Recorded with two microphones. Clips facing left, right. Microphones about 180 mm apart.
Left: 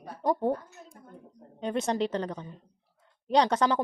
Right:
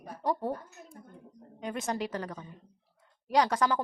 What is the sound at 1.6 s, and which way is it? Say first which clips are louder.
Speech: left 5 dB; 30° left (ahead or behind).